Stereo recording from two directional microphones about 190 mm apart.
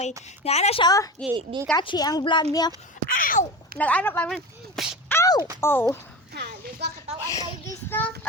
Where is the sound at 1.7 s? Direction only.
25° left (ahead or behind).